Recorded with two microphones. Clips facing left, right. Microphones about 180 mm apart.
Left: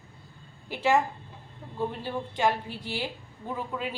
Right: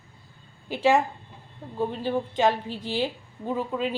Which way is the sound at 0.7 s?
15° right (ahead or behind).